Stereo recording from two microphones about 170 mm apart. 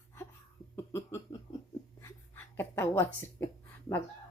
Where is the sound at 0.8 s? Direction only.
15° left (ahead or behind).